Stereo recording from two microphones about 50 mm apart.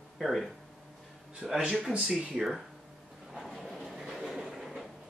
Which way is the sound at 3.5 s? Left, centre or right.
Centre.